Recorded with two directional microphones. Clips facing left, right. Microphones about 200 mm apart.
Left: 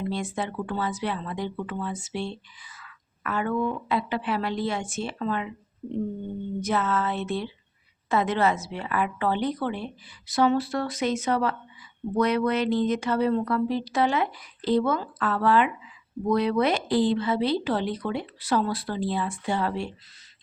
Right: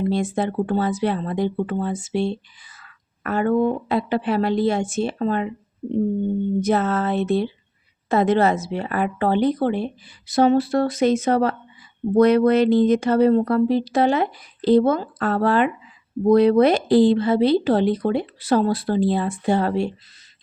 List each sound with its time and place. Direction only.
0.0 s speech: 35° right (ahead or behind)
6.7 s speech: 40° right (ahead or behind)
10.9 s speech: 25° right (ahead or behind)
11.3 s speech: 40° right (ahead or behind)
18.3 s speech: 25° right (ahead or behind)
18.9 s speech: 40° right (ahead or behind)